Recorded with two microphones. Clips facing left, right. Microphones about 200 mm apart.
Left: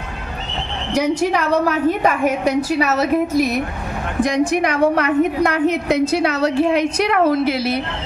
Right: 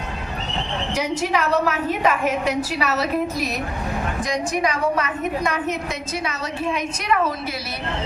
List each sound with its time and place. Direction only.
2.0 s a woman's voice: 45° left (ahead or behind); by 7.3 s 65° left (ahead or behind)
7.5 s a woman's voice: 30° left (ahead or behind)